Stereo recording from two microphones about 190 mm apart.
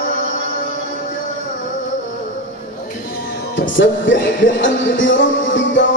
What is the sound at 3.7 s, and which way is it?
Music, 75° left (ahead or behind).